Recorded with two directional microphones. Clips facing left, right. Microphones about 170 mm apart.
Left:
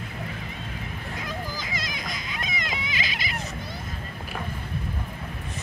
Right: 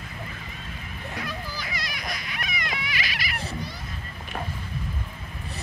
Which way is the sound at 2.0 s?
20° left (ahead or behind).